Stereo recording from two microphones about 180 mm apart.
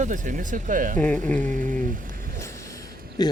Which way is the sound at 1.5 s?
45° right (ahead or behind).